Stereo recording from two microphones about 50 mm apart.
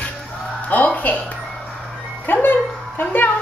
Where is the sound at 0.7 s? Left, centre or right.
Left.